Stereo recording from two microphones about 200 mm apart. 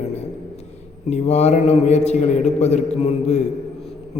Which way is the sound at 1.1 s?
35° left (ahead or behind).